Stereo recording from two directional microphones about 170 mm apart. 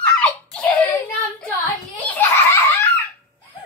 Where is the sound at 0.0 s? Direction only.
5° left (ahead or behind).